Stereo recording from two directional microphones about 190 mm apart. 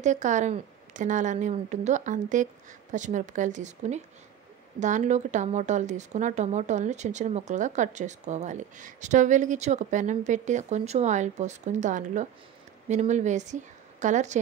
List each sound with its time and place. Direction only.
0.0 s a woman's voice: 40° right (ahead or behind)